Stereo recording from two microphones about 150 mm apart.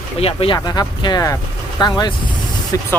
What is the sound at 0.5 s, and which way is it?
Speech, 25° left (ahead or behind).